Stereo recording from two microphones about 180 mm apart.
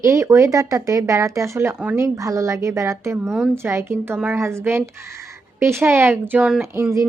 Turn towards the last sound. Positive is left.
turn(degrees=-15)  # may be behind; listen again after turning